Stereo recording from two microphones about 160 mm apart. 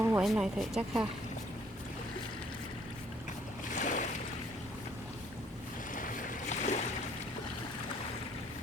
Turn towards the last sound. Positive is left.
turn(degrees=45)  # may be behind; listen again after turning